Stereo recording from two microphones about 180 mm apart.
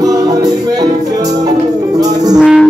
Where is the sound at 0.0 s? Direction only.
20° right (ahead or behind).